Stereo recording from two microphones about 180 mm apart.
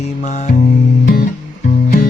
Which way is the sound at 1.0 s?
50° left (ahead or behind).